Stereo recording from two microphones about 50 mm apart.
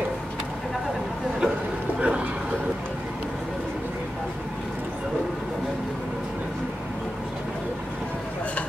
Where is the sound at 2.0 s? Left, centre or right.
Right.